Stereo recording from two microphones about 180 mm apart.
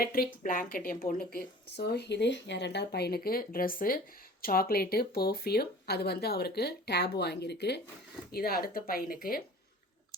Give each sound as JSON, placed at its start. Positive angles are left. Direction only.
{"t": 0.0, "sound": "speech", "side_deg": 55}
{"t": 8.3, "sound": "speech", "side_deg": 55}